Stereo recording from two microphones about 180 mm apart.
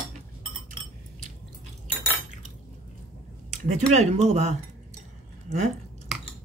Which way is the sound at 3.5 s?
40° right (ahead or behind).